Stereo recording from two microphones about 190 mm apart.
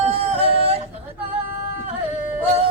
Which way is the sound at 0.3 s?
30° right (ahead or behind).